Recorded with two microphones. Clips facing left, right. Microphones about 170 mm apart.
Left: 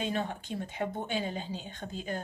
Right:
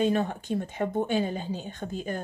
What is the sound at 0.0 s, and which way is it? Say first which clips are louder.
A woman's voice: right 8 dB; 45° right (ahead or behind).